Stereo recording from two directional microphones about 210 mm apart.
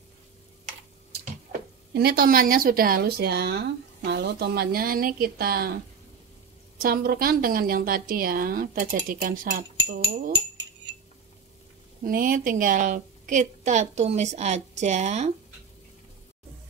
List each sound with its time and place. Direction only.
2.0 s speech: 45° right (ahead or behind)
6.8 s speech: 45° right (ahead or behind)
12.0 s a woman's voice: 40° right (ahead or behind)